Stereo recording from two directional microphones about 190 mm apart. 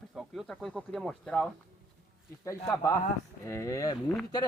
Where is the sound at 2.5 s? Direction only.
15° left (ahead or behind).